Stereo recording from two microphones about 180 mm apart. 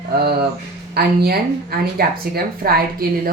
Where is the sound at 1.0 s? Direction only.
60° right (ahead or behind).